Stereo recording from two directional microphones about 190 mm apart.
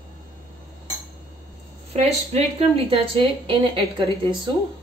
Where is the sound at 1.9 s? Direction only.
35° right (ahead or behind).